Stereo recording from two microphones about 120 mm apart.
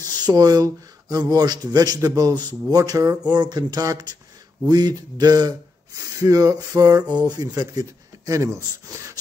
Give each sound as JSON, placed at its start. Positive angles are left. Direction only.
{"t": 0.0, "sound": "speech", "side_deg": -35}